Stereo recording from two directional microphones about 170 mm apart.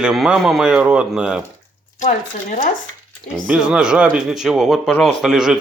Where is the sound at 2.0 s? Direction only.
50° left (ahead or behind).